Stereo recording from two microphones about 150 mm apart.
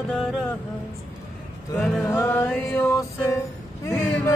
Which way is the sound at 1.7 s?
Centre (ahead or behind).